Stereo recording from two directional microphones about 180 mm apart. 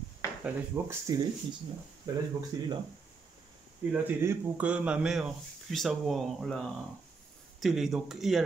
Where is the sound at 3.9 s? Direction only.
10° right (ahead or behind).